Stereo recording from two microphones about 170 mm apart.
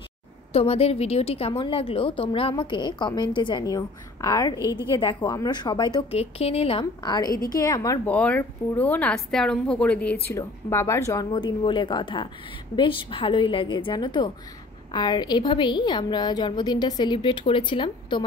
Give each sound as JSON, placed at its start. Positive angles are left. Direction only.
{"t": 0.5, "sound": "a woman's voice", "side_deg": 35}
{"t": 6.1, "sound": "a woman's voice", "side_deg": 35}
{"t": 11.3, "sound": "a woman's voice", "side_deg": 30}